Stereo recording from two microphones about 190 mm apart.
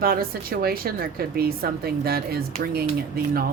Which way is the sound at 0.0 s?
50° right (ahead or behind).